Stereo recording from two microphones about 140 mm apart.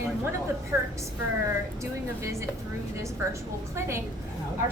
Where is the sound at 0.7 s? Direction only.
15° right (ahead or behind).